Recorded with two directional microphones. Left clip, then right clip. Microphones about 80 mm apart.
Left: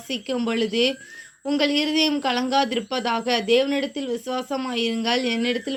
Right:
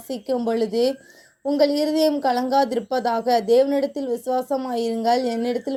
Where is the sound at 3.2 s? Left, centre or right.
Right.